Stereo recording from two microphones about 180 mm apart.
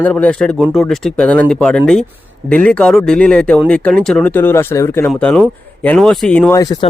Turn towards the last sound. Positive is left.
turn(degrees=20)  # may be behind; listen again after turning